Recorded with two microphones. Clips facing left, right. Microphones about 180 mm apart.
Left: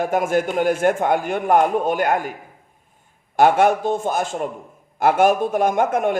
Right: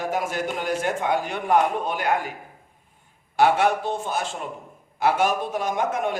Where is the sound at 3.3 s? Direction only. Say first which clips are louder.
Left 4 dB; 50° left (ahead or behind).